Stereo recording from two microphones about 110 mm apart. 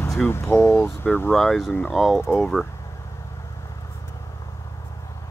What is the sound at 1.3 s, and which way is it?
Speech, centre (ahead or behind).